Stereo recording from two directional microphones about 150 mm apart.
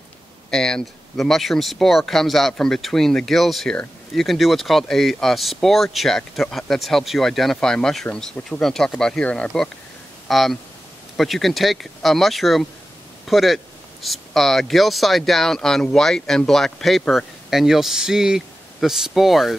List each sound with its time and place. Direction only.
0.5 s speech: 5° left (ahead or behind)